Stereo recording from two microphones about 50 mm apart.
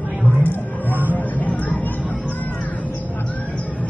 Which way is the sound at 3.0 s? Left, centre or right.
Left.